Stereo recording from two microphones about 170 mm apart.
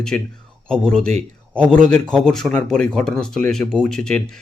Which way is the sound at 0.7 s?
5° left (ahead or behind).